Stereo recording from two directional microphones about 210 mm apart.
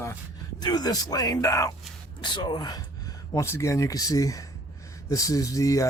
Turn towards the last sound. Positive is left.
turn(degrees=15)  # may be behind; listen again after turning